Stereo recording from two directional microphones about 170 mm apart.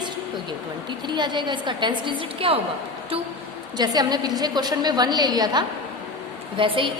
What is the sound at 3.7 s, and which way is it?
A woman's voice, 25° right (ahead or behind).